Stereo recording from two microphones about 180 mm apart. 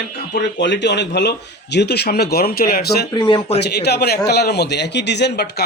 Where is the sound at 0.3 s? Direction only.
75° left (ahead or behind).